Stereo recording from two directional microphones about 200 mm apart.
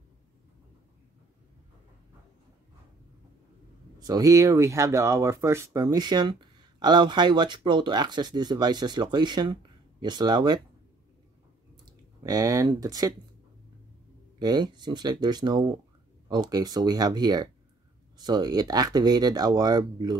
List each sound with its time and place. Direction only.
4.0 s speech: 20° right (ahead or behind)
11.7 s a sound: 20° right (ahead or behind)
14.4 s speech: 20° right (ahead or behind)